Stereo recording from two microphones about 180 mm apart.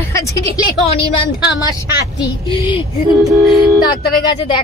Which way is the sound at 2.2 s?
30° left (ahead or behind).